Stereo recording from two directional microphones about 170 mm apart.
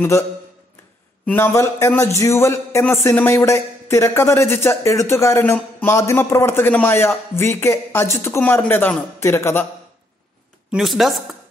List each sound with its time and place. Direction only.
1.2 s a man's voice: 10° left (ahead or behind)
10.7 s speech: centre (ahead or behind)